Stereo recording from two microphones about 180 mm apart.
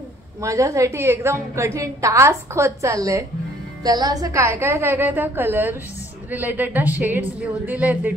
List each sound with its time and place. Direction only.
0.4 s a woman's voice: 15° right (ahead or behind)